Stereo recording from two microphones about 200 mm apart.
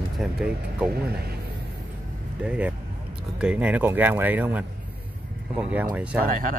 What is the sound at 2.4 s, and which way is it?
Speech, 5° right (ahead or behind).